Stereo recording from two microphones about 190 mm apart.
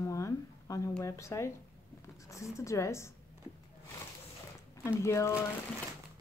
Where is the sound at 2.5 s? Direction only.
15° left (ahead or behind).